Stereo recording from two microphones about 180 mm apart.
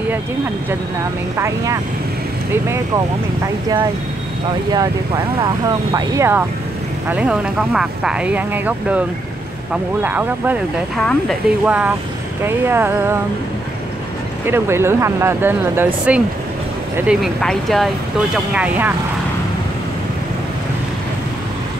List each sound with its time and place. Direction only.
1.4 s speech: 20° right (ahead or behind)
4.7 s speech: 20° right (ahead or behind)
10.0 s speech: 10° right (ahead or behind)
11.0 s speech: 5° left (ahead or behind)
11.6 s speech: 5° right (ahead or behind)
14.4 s speech: 15° right (ahead or behind)